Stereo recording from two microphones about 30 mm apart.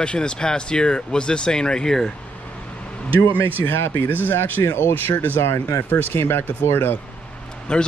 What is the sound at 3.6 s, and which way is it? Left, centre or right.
Speech, left.